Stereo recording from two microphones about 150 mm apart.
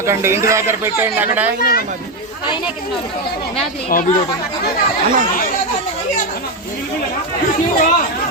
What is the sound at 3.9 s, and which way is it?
Speech, 70° left (ahead or behind).